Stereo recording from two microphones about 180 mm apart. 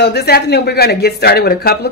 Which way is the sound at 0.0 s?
65° left (ahead or behind).